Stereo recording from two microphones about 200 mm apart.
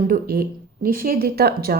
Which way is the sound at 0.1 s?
45° right (ahead or behind).